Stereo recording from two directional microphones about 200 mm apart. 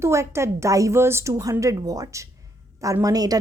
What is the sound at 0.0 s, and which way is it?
Speech, 15° right (ahead or behind).